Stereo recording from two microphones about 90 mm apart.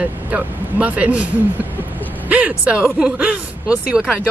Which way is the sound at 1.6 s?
20° right (ahead or behind).